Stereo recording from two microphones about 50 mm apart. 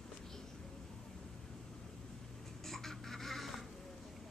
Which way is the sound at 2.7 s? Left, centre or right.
Centre.